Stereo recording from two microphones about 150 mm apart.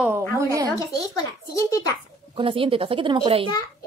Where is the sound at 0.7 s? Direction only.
25° left (ahead or behind).